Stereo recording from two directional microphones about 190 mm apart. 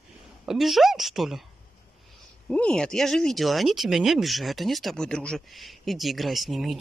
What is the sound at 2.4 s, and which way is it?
Speech, 5° left (ahead or behind).